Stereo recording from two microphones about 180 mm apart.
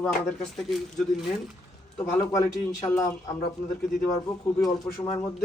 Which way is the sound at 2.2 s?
15° left (ahead or behind).